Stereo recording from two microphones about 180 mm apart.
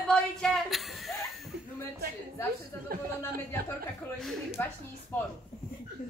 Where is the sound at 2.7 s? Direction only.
10° left (ahead or behind).